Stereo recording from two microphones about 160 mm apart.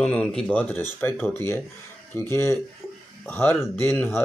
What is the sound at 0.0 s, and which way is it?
Speech, 5° left (ahead or behind).